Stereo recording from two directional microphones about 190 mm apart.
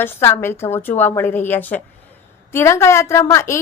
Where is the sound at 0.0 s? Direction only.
10° left (ahead or behind).